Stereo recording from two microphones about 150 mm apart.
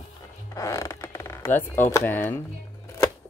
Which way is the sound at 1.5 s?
15° left (ahead or behind).